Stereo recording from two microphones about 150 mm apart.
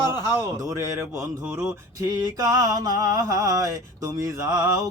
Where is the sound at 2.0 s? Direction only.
25° right (ahead or behind).